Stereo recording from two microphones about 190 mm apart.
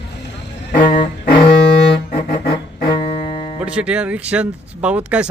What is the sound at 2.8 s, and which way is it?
Music, 30° left (ahead or behind).